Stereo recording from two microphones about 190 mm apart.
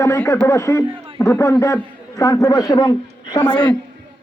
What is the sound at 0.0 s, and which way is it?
A man's voice, 15° left (ahead or behind).